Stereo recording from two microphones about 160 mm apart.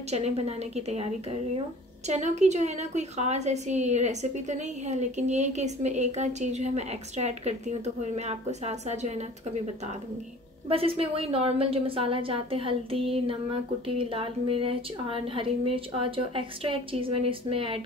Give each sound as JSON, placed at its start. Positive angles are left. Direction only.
{"t": 0.1, "sound": "a woman's voice", "side_deg": -40}
{"t": 2.0, "sound": "a woman's voice", "side_deg": -45}
{"t": 10.7, "sound": "a woman's voice", "side_deg": -35}